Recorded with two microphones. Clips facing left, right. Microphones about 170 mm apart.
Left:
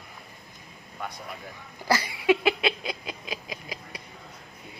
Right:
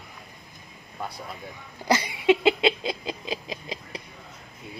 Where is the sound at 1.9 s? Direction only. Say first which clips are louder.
Right 2 dB; 20° right (ahead or behind).